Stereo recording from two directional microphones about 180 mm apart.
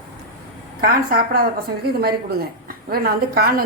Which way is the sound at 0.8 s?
55° right (ahead or behind).